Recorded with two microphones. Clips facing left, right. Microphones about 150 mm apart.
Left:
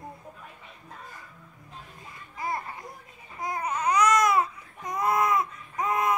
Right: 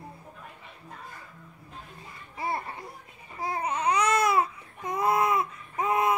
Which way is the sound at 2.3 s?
30° right (ahead or behind).